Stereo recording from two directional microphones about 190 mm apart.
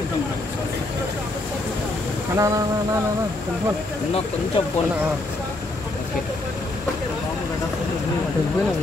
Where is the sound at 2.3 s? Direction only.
15° right (ahead or behind).